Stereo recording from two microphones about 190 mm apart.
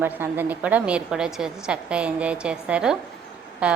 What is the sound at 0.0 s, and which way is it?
A woman's voice, 10° right (ahead or behind).